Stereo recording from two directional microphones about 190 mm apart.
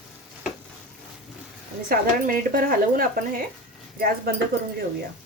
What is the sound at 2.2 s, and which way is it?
A woman's voice, 45° right (ahead or behind).